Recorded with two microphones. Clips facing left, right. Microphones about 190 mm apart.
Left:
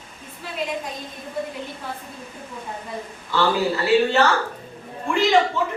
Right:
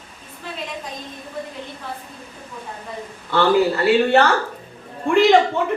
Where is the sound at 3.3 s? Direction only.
60° right (ahead or behind).